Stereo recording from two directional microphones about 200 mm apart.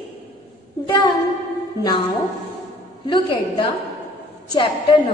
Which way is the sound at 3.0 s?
25° left (ahead or behind).